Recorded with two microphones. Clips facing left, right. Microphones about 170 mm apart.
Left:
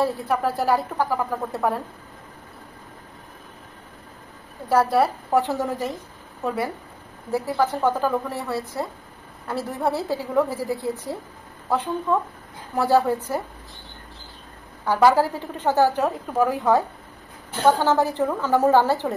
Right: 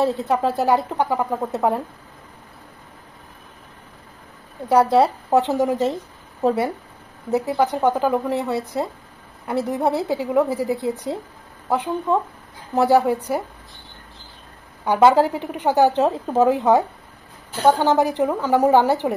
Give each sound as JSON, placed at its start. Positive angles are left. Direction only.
{"t": 0.0, "sound": "speech", "side_deg": -20}
{"t": 4.6, "sound": "a woman's voice", "side_deg": -20}
{"t": 14.9, "sound": "a woman's voice", "side_deg": -20}